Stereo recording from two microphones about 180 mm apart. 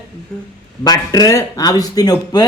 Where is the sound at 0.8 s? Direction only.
20° left (ahead or behind).